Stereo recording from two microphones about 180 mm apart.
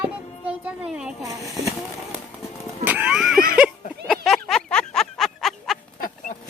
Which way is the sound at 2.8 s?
10° right (ahead or behind).